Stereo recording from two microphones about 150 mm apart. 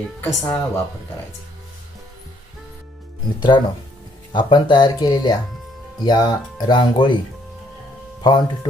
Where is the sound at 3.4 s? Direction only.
30° left (ahead or behind).